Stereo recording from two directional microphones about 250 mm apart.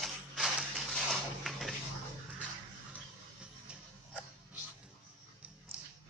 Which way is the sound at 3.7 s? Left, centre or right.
Centre.